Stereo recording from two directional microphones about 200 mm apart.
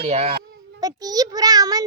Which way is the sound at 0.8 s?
20° right (ahead or behind).